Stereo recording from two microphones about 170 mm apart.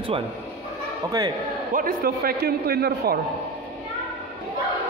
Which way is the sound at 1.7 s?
60° right (ahead or behind).